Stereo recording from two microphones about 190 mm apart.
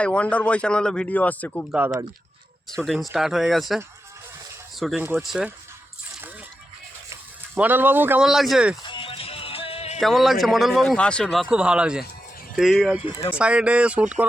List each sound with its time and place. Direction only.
0.0 s a man's voice: 5° left (ahead or behind)
1.7 s speech: 10° right (ahead or behind)
2.6 s speech: centre (ahead or behind)
4.8 s speech: centre (ahead or behind)
7.1 s speech: 10° right (ahead or behind)
8.9 s music: 30° left (ahead or behind)
10.0 s speech: centre (ahead or behind)